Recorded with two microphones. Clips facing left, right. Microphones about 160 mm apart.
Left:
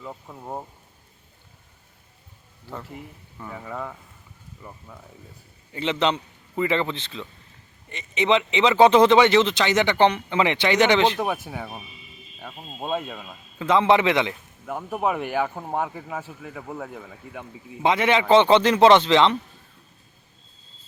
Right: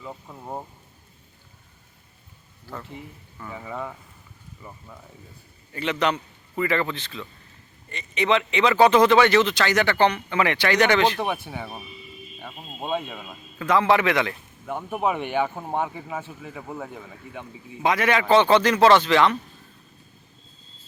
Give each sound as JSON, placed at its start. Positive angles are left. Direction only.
{"t": 0.0, "sound": "a man's voice", "side_deg": 5}
{"t": 3.5, "sound": "a man's voice", "side_deg": 0}
{"t": 5.7, "sound": "speech", "side_deg": 20}
{"t": 11.4, "sound": "a man's voice", "side_deg": 5}
{"t": 12.4, "sound": "music", "side_deg": 0}
{"t": 12.8, "sound": "a man's voice", "side_deg": 0}
{"t": 13.6, "sound": "speech", "side_deg": 20}
{"t": 14.7, "sound": "a man's voice", "side_deg": 5}
{"t": 17.8, "sound": "speech", "side_deg": 25}